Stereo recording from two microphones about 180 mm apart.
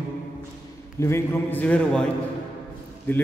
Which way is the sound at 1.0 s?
15° left (ahead or behind).